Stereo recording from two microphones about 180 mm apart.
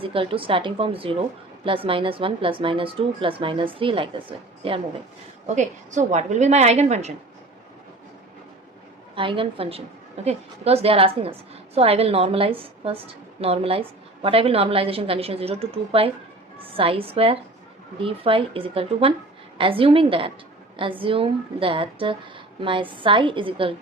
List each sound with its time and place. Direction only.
0.0 s speech: 30° right (ahead or behind)
5.5 s a woman's voice: 40° right (ahead or behind)
9.1 s a woman's voice: 30° right (ahead or behind)